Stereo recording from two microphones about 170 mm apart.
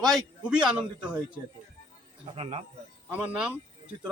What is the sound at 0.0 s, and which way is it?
A man's voice, 5° right (ahead or behind).